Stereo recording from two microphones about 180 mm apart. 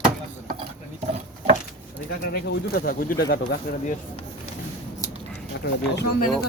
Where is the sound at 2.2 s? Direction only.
60° left (ahead or behind).